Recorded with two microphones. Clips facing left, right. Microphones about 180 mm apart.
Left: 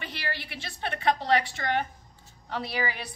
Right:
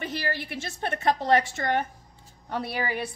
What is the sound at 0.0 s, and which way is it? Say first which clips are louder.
A woman's voice: right 5 dB; 45° right (ahead or behind).